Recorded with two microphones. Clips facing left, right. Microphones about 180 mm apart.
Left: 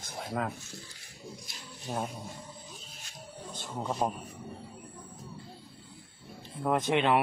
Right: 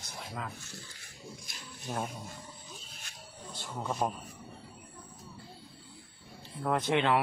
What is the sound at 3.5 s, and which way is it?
Speech, 20° left (ahead or behind).